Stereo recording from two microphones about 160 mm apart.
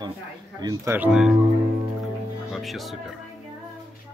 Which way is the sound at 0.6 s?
25° right (ahead or behind).